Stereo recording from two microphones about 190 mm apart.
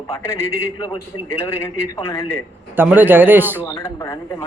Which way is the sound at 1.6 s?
20° left (ahead or behind).